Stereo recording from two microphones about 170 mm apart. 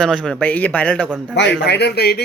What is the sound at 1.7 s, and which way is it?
Speech, 75° left (ahead or behind).